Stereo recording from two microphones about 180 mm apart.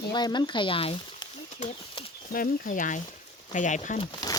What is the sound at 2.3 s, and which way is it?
Speech, 50° left (ahead or behind).